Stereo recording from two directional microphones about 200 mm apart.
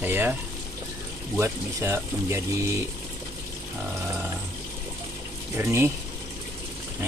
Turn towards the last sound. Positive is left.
turn(degrees=-10)  # may be behind; listen again after turning